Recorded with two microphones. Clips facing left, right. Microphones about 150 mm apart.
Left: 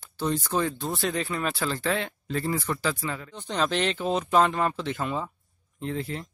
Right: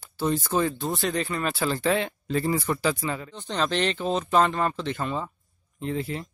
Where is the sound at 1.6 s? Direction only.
15° right (ahead or behind).